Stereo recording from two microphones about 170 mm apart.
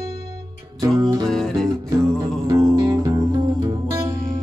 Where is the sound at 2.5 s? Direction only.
20° right (ahead or behind).